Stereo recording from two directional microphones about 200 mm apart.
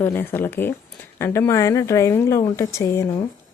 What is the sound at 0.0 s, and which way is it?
A woman's voice, 10° left (ahead or behind).